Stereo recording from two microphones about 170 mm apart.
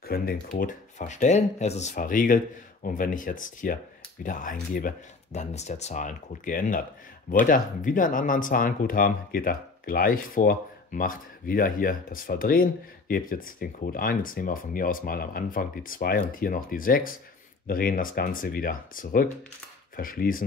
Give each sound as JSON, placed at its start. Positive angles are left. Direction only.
{"t": 0.0, "sound": "speech", "side_deg": 60}